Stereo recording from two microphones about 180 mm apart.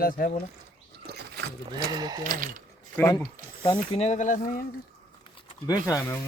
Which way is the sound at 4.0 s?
40° left (ahead or behind).